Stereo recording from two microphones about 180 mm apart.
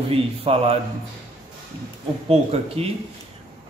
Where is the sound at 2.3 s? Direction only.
35° right (ahead or behind).